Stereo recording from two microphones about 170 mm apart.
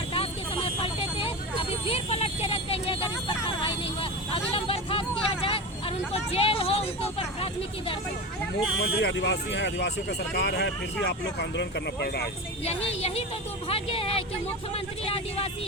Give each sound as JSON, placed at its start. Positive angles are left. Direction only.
{"t": 0.1, "sound": "vehicle", "side_deg": 35}
{"t": 8.8, "sound": "speech", "side_deg": 85}
{"t": 12.6, "sound": "speech", "side_deg": 35}